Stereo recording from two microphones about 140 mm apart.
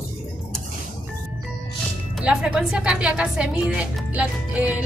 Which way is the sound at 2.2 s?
5° right (ahead or behind).